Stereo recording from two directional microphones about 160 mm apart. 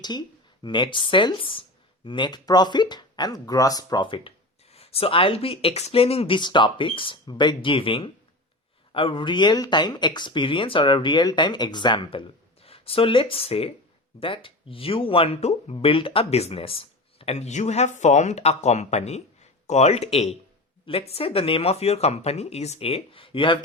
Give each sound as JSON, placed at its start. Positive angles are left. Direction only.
{"t": 0.0, "sound": "speech", "side_deg": 25}